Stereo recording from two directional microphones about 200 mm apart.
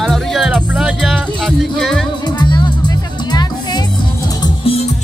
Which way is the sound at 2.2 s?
20° left (ahead or behind).